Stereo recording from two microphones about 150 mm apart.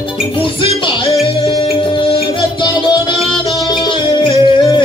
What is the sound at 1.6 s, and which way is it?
Music, 35° left (ahead or behind).